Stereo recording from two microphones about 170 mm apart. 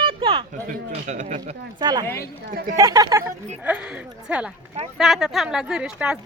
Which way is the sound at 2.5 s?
55° right (ahead or behind).